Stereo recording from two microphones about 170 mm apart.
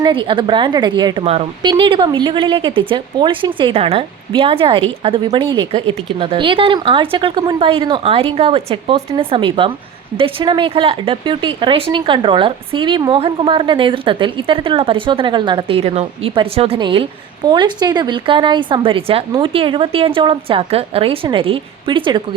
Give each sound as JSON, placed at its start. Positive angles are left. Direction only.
{"t": 0.0, "sound": "a woman's voice", "side_deg": -30}